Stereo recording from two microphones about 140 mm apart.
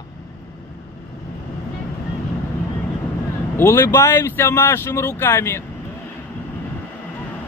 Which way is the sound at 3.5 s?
15° left (ahead or behind).